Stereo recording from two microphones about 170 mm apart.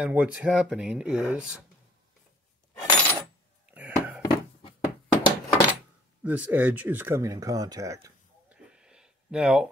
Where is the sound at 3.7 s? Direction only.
10° right (ahead or behind).